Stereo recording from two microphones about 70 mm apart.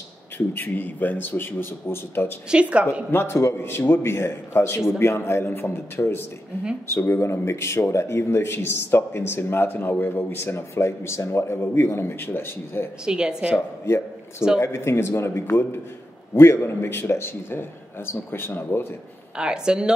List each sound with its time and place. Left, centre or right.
0.6 s a man's voice: left
2.5 s a woman's voice: centre
3.1 s speech: left
13.0 s a woman's voice: centre
13.6 s speech: left
19.3 s a woman's voice: centre